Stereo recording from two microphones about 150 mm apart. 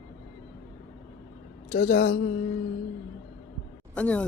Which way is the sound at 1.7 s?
55° left (ahead or behind).